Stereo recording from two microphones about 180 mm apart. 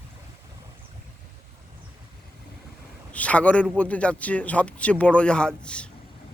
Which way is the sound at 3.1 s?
5° left (ahead or behind).